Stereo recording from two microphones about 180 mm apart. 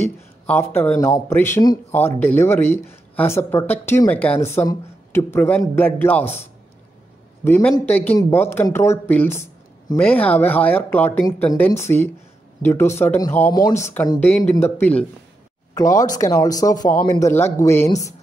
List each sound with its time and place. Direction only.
0.5 s speech: 10° left (ahead or behind)
7.4 s speech: 10° left (ahead or behind)